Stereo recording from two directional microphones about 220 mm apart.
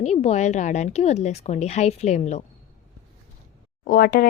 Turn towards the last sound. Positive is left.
turn(degrees=40)  # may be behind; listen again after turning